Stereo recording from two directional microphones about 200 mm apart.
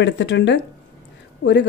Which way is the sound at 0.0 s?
60° left (ahead or behind).